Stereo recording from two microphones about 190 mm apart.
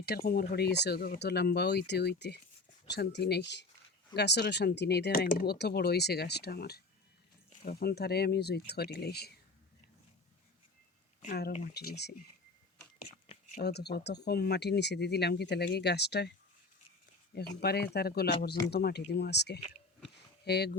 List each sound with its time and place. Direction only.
0.2 s speech: 55° left (ahead or behind)
11.2 s speech: 50° left (ahead or behind)
13.6 s speech: 60° left (ahead or behind)
17.3 s speech: 60° left (ahead or behind)